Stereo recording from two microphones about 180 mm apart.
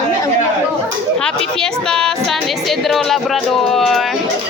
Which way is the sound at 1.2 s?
5° left (ahead or behind).